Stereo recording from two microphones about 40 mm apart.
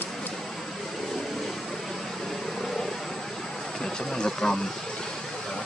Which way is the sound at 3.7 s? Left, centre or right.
Centre.